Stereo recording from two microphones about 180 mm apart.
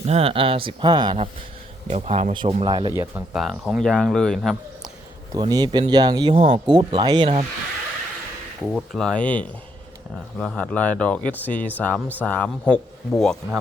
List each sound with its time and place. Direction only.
0.0 s speech: 35° right (ahead or behind)
2.9 s speech: 15° right (ahead or behind)
3.3 s a man's voice: centre (ahead or behind)
5.3 s speech: 20° right (ahead or behind)
8.6 s a man's voice: centre (ahead or behind)